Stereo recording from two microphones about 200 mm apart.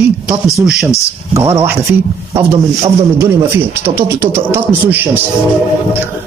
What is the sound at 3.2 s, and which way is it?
Speech, 15° right (ahead or behind).